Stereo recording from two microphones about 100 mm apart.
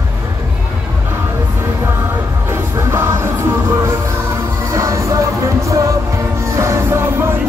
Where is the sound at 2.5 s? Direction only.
30° right (ahead or behind).